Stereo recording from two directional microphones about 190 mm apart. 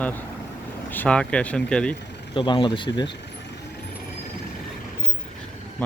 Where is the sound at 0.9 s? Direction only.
5° left (ahead or behind).